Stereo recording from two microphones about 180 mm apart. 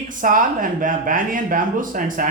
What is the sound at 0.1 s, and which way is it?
A man's voice, 50° right (ahead or behind).